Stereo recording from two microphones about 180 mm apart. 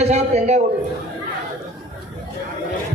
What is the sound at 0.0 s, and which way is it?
Speech, 40° right (ahead or behind).